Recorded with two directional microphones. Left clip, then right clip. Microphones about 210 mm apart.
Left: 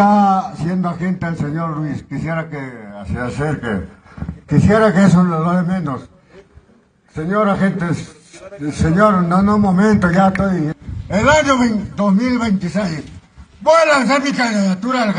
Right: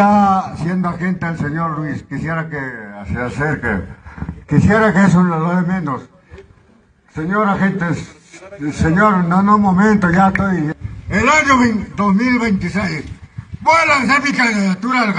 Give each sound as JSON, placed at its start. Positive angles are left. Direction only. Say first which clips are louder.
{"t": 0.0, "sound": "a man's voice", "louder": "even", "side_deg": 10}
{"t": 7.2, "sound": "a man's voice", "louder": "even", "side_deg": 50}
{"t": 12.3, "sound": "a man's voice", "louder": "right 2 dB", "side_deg": 70}